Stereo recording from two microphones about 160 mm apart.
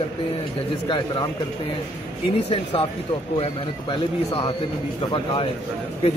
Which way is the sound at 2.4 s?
35° left (ahead or behind).